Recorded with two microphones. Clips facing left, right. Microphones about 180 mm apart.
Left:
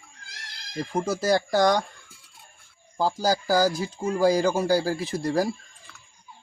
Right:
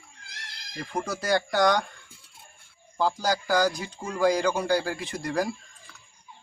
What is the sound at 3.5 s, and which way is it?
Speech, 5° left (ahead or behind).